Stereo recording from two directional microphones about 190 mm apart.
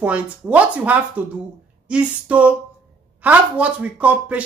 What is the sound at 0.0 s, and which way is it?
Speech, 10° right (ahead or behind).